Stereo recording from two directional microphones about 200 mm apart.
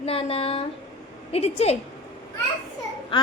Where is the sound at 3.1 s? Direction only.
25° left (ahead or behind).